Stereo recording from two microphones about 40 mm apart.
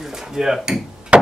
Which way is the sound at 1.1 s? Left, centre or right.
Right.